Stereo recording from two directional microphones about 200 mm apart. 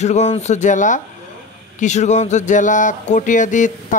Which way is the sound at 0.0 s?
35° left (ahead or behind).